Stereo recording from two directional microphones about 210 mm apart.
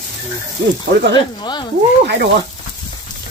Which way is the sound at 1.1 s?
20° left (ahead or behind).